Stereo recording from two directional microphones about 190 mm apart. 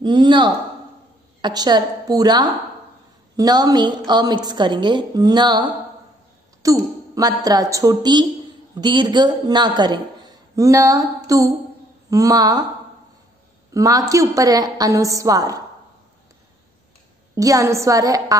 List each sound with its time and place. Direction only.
0.0 s a woman's voice: 25° right (ahead or behind)
11.2 s music: 20° right (ahead or behind)
12.1 s a woman's voice: 20° right (ahead or behind)
13.7 s a woman's voice: 20° right (ahead or behind)
17.4 s a woman's voice: 20° right (ahead or behind)